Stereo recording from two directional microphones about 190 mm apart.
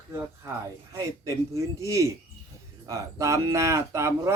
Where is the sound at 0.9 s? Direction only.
15° right (ahead or behind).